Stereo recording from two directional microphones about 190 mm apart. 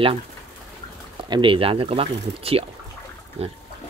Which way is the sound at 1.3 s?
25° right (ahead or behind).